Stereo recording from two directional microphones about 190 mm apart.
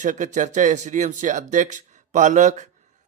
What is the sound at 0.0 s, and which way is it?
Speech, 40° right (ahead or behind).